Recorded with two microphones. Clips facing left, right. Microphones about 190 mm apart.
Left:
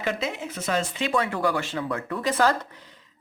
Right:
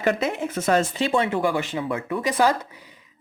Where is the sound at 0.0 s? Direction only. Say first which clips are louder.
Right 6 dB; 55° right (ahead or behind).